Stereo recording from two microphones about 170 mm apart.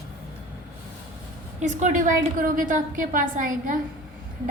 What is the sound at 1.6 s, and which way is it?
A woman's voice, 45° right (ahead or behind).